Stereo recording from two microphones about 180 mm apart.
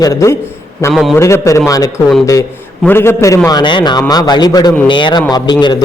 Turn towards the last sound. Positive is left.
turn(degrees=25)  # may be behind; listen again after turning